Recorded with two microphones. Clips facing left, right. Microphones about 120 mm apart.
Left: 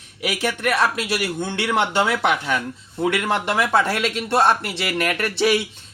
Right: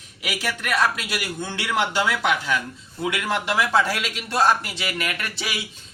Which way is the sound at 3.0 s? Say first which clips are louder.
Left 4 dB; 60° left (ahead or behind).